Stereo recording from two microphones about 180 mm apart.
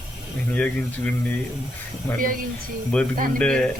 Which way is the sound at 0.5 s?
5° left (ahead or behind).